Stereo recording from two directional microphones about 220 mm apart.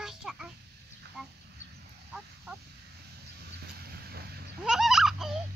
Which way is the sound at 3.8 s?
45° right (ahead or behind).